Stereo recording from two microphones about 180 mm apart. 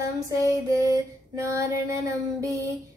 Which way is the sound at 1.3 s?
15° right (ahead or behind).